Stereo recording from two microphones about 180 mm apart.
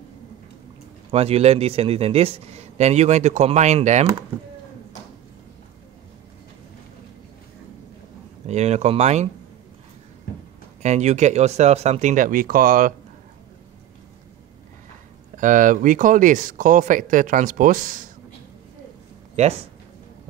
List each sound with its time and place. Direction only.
1.1 s speech: 35° right (ahead or behind)
8.5 s speech: 40° right (ahead or behind)
10.8 s speech: 40° right (ahead or behind)
15.3 s speech: 45° right (ahead or behind)
19.4 s speech: 35° right (ahead or behind)